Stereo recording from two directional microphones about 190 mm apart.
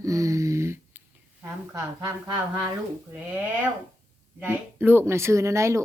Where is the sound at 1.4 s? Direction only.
20° right (ahead or behind).